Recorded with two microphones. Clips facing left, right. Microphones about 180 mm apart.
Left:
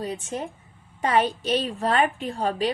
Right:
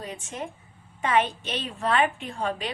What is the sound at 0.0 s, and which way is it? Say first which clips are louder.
A woman's voice: left 5 dB; 35° left (ahead or behind).